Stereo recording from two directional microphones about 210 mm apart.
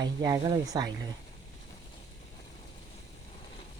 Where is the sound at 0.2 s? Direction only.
15° right (ahead or behind).